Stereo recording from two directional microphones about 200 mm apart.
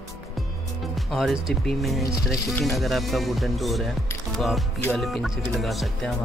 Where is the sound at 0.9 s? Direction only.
Centre (ahead or behind).